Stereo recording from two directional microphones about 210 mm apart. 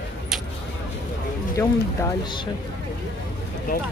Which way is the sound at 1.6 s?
15° left (ahead or behind).